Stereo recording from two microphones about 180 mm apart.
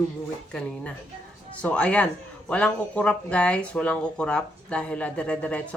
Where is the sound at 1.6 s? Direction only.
5° left (ahead or behind).